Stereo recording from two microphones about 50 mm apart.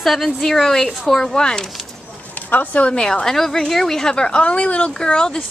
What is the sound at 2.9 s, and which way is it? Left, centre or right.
Speech, centre.